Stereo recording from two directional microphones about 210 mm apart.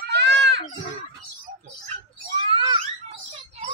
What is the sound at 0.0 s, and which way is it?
Goat, 50° right (ahead or behind).